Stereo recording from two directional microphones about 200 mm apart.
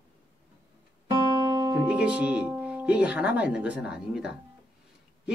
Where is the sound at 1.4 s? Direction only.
20° right (ahead or behind).